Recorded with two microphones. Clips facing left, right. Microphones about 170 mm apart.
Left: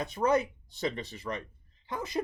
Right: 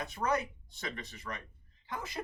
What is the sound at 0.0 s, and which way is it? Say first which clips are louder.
Speech: left 6 dB; 25° left (ahead or behind).